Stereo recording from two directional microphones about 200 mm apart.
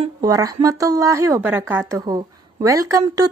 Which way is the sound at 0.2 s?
20° right (ahead or behind).